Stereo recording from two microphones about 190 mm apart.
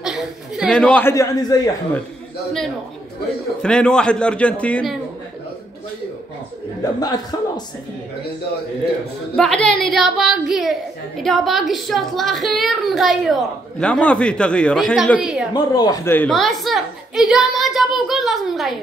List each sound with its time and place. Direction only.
0.0 s a man's voice: centre (ahead or behind); by 1.7 s 20° left (ahead or behind)
3.6 s a woman's voice: 5° left (ahead or behind)
6.8 s a man's voice: 20° left (ahead or behind)
9.4 s a woman's voice: 5° left (ahead or behind)
15.5 s a woman's voice: 20° left (ahead or behind); by 18.8 s centre (ahead or behind)